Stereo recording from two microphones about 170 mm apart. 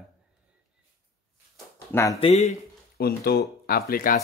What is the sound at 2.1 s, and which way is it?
Speech, 35° left (ahead or behind).